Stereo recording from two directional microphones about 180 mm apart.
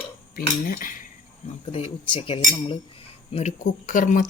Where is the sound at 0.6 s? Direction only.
50° left (ahead or behind).